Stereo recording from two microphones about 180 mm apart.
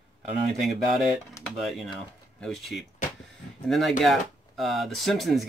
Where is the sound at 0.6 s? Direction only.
Centre (ahead or behind).